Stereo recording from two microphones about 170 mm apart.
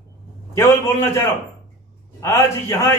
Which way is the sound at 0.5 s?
15° left (ahead or behind).